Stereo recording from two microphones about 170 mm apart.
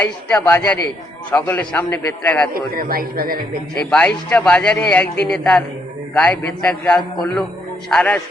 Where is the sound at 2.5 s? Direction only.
60° right (ahead or behind).